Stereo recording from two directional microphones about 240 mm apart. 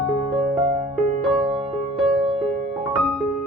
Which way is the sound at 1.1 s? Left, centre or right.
Right.